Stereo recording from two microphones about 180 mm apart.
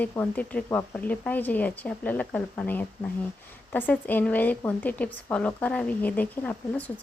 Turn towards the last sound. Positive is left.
turn(degrees=10)  # may be behind; listen again after turning